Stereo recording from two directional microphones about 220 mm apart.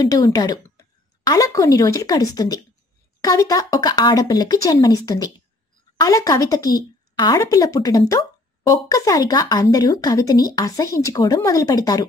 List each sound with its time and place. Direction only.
0.0 s speech: 15° left (ahead or behind)